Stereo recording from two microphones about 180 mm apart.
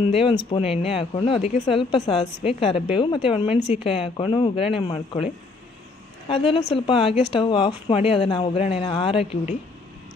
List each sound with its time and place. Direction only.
0.0 s a woman's voice: 30° left (ahead or behind)